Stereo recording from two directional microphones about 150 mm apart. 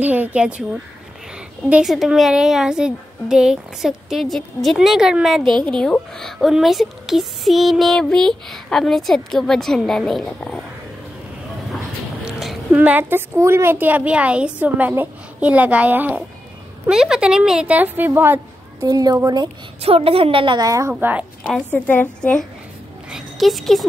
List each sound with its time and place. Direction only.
0.0 s a woman's voice: 10° right (ahead or behind)
1.7 s a woman's voice: 5° right (ahead or behind)
12.3 s a woman's voice: centre (ahead or behind); by 19.4 s 25° right (ahead or behind)
19.8 s a woman's voice: 40° right (ahead or behind); by 20.9 s 25° right (ahead or behind)
21.0 s a woman's voice: 10° right (ahead or behind)
21.7 s a woman's voice: 10° left (ahead or behind)